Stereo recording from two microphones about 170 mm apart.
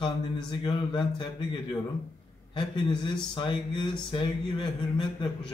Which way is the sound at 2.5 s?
25° left (ahead or behind).